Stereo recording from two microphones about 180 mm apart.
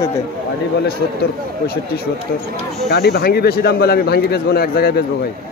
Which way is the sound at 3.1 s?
60° left (ahead or behind).